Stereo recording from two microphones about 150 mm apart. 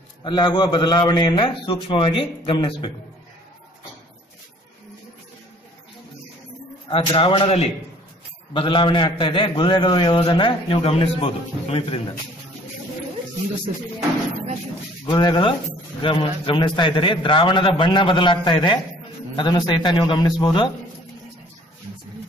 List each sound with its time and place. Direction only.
0.2 s a man's voice: 30° left (ahead or behind)
6.9 s a man's voice: 35° left (ahead or behind)
15.0 s a man's voice: 30° left (ahead or behind)